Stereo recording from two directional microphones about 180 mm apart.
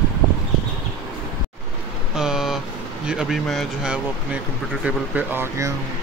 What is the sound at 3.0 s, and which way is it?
Speech, 5° right (ahead or behind).